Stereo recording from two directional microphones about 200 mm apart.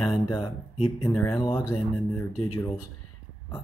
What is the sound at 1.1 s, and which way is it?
Speech, 5° left (ahead or behind).